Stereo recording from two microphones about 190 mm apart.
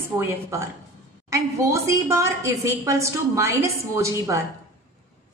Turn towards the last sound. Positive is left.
turn(degrees=-15)  # may be behind; listen again after turning